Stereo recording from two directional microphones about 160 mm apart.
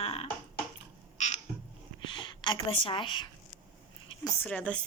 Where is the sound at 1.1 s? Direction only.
45° left (ahead or behind).